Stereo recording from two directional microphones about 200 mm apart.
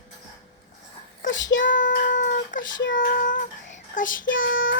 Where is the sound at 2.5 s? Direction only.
40° left (ahead or behind).